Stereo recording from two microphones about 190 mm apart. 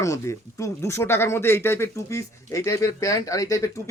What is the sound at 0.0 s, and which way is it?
Speech, 15° left (ahead or behind).